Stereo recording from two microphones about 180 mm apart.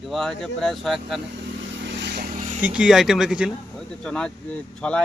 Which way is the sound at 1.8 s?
75° right (ahead or behind).